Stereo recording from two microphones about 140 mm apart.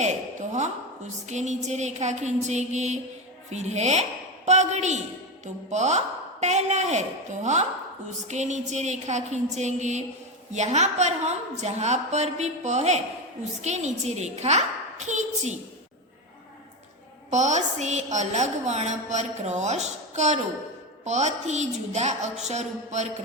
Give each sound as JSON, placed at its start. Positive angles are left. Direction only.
{"t": 0.0, "sound": "a sound", "side_deg": -55}
{"t": 1.3, "sound": "a woman's voice", "side_deg": -55}
{"t": 8.3, "sound": "a woman's voice", "side_deg": -55}
{"t": 17.3, "sound": "a woman's voice", "side_deg": -55}